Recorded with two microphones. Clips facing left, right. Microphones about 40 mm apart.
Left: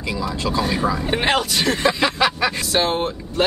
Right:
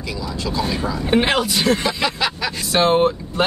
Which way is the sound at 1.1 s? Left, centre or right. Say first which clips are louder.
Right 6 dB; centre.